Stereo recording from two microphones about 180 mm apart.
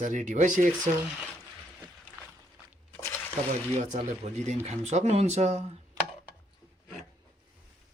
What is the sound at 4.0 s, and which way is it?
Speech, 35° right (ahead or behind).